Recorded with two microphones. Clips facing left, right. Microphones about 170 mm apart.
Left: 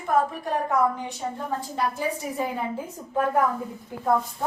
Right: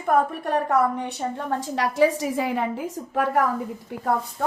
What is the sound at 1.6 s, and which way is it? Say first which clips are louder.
A woman's voice: right 10 dB; 90° right.